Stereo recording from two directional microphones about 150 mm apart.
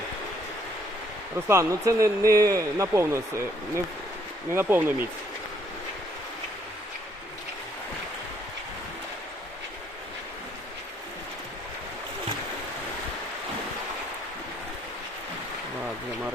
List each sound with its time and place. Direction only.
1.5 s speech: 20° right (ahead or behind)
4.5 s speech: 15° right (ahead or behind)